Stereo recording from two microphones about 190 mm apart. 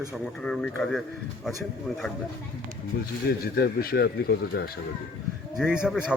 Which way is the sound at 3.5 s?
55° left (ahead or behind).